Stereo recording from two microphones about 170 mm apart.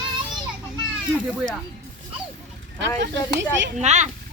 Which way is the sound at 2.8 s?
90° right.